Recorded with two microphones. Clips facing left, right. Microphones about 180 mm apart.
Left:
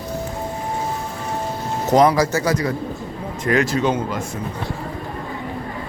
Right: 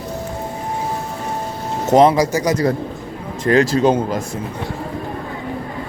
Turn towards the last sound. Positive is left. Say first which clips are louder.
# right 5 dB
turn(degrees=-35)  # may be behind; listen again after turning